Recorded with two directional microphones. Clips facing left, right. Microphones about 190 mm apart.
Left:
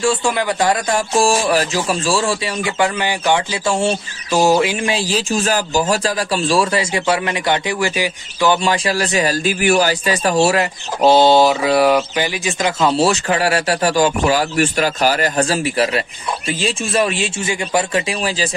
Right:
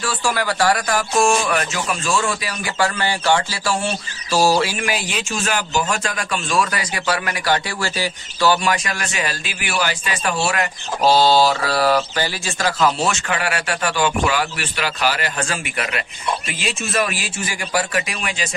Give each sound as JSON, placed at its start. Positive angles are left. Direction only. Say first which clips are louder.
{"t": 0.0, "sound": "speech", "louder": "left 5 dB", "side_deg": 25}
{"t": 8.6, "sound": "speech", "louder": "left 5 dB", "side_deg": 30}
{"t": 11.0, "sound": "speech", "louder": "left 4 dB", "side_deg": 20}
{"t": 13.0, "sound": "speech", "louder": "left 6 dB", "side_deg": 35}